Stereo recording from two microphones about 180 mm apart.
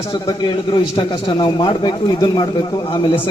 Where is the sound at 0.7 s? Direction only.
25° left (ahead or behind).